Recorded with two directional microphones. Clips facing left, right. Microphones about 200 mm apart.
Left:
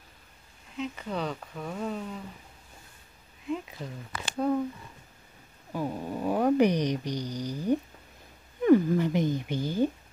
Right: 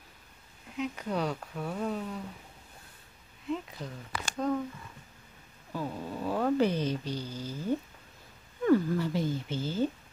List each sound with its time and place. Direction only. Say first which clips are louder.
0.7 s speech: right 1 dB; 5° right (ahead or behind)
3.4 s speech: left 1 dB; 5° left (ahead or behind)
5.7 s speech: left 4 dB; 15° left (ahead or behind)